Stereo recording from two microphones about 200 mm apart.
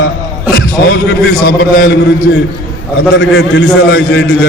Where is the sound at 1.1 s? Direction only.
55° left (ahead or behind).